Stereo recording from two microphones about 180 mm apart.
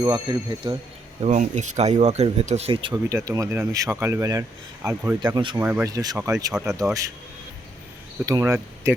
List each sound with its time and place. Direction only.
0.0 s speech: 25° right (ahead or behind)
1.2 s speech: 40° right (ahead or behind)
2.9 s speech: 20° right (ahead or behind)
5.2 s speech: 25° right (ahead or behind)
5.5 s speech: 10° right (ahead or behind)
6.1 s speech: 10° right (ahead or behind)
8.3 s speech: 20° right (ahead or behind)